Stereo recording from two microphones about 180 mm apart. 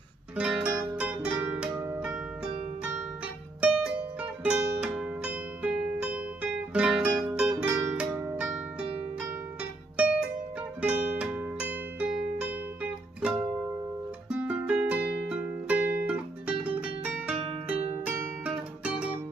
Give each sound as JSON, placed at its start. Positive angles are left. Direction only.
{"t": 0.4, "sound": "music", "side_deg": -5}
{"t": 3.6, "sound": "music", "side_deg": -5}
{"t": 9.6, "sound": "music", "side_deg": -5}
{"t": 16.1, "sound": "guitar", "side_deg": -5}
{"t": 18.0, "sound": "music", "side_deg": -5}